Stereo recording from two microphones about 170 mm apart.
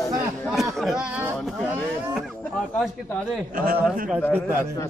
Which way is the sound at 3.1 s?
10° left (ahead or behind).